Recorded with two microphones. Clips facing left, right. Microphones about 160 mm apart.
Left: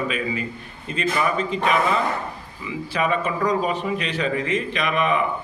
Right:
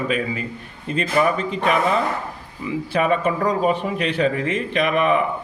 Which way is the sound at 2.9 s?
50° right (ahead or behind).